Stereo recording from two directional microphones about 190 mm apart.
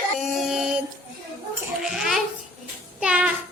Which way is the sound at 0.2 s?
Centre (ahead or behind).